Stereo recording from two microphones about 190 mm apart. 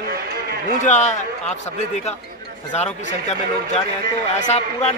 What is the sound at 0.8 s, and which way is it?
Speech, 40° left (ahead or behind).